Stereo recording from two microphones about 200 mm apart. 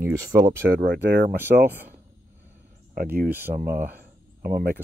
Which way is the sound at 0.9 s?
55° right (ahead or behind).